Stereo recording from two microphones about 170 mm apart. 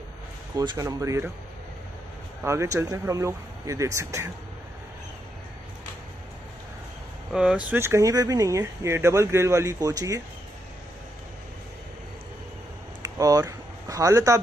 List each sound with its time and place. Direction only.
0.6 s speech: 20° right (ahead or behind)
2.4 s speech: 15° right (ahead or behind)
7.3 s speech: 5° right (ahead or behind)
13.0 s a sound: 20° right (ahead or behind)